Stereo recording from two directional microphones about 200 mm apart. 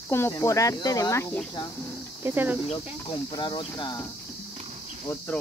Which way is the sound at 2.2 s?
10° right (ahead or behind).